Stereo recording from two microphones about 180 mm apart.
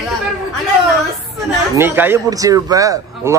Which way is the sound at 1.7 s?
10° right (ahead or behind).